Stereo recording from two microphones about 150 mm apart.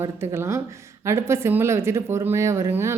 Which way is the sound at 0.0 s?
15° right (ahead or behind).